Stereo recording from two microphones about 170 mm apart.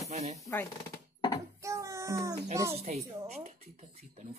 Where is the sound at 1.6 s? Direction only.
15° right (ahead or behind).